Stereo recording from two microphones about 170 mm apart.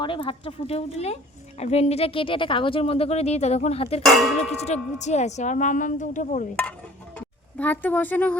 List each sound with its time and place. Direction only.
0.0 s speech: 30° left (ahead or behind)
4.0 s a sound: centre (ahead or behind)
4.6 s a woman's voice: 40° left (ahead or behind)
7.2 s speech: 10° left (ahead or behind)